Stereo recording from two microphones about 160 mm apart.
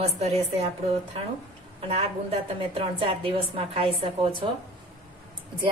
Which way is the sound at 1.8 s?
40° right (ahead or behind).